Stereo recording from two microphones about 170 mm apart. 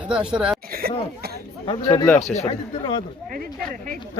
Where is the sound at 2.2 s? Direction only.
40° left (ahead or behind).